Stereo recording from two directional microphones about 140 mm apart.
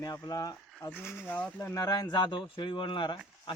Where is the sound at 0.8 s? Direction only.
15° left (ahead or behind).